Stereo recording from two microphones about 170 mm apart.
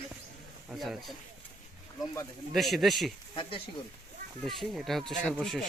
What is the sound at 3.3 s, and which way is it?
Speech, 30° left (ahead or behind).